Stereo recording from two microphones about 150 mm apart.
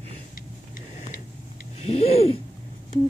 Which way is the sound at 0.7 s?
55° left (ahead or behind).